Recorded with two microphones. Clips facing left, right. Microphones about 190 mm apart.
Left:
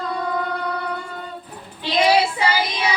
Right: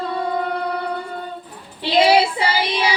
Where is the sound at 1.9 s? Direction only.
30° right (ahead or behind).